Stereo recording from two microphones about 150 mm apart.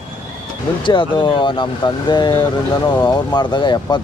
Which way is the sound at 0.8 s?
30° left (ahead or behind).